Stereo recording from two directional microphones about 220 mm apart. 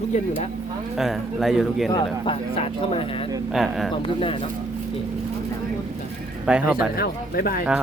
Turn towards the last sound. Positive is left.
turn(degrees=40)  # may be behind; listen again after turning